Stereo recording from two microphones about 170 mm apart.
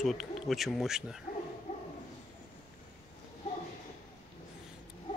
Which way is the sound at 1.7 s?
40° left (ahead or behind).